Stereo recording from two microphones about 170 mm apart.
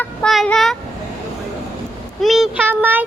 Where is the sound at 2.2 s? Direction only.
Centre (ahead or behind).